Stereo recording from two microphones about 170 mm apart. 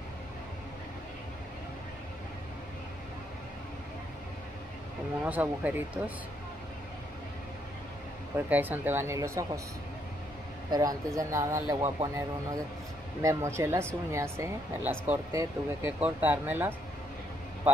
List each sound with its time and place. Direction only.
5.2 s speech: 10° right (ahead or behind)
8.4 s speech: 10° right (ahead or behind)
10.7 s speech: 20° right (ahead or behind)